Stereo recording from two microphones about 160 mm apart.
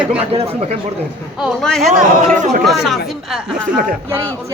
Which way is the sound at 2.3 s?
55° right (ahead or behind).